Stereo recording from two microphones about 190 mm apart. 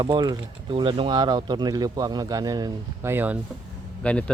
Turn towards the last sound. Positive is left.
turn(degrees=5)  # may be behind; listen again after turning